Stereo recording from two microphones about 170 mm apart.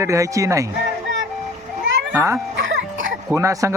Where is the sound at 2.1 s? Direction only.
15° right (ahead or behind).